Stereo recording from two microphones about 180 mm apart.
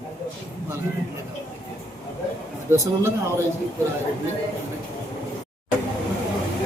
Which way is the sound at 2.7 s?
15° right (ahead or behind).